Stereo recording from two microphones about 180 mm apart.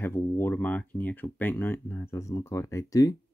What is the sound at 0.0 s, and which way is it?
Speech, 15° left (ahead or behind).